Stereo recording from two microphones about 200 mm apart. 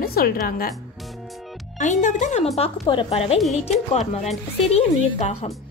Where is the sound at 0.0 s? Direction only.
50° left (ahead or behind).